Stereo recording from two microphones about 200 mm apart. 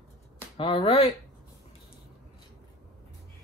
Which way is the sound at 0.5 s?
25° left (ahead or behind).